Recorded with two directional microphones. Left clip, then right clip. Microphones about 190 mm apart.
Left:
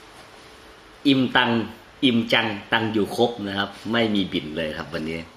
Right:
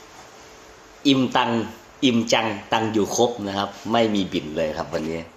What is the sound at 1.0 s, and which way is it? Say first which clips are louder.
Speech: even; 15° left (ahead or behind).